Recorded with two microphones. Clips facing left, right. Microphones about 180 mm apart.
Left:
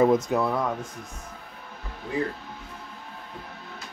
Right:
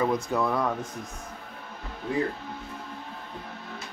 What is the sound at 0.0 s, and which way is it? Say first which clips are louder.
Speech: left 6 dB; 20° left (ahead or behind).